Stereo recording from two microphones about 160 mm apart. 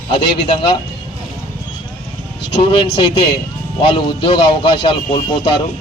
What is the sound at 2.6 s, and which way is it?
Speech, 35° left (ahead or behind).